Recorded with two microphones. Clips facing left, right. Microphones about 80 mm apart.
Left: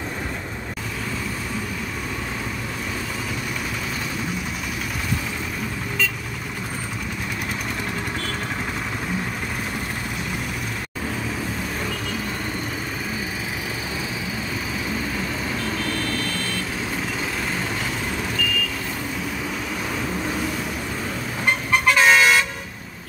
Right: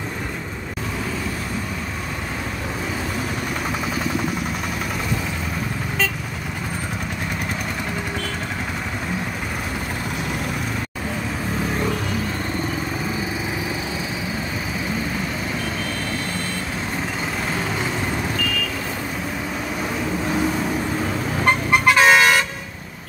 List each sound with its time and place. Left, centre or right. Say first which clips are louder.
21.8 s vehicle: right 2 dB; centre